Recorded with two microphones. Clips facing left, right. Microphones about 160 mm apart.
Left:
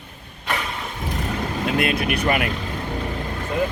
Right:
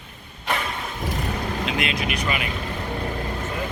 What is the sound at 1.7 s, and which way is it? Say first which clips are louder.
Speech: left 8 dB; 55° left (ahead or behind).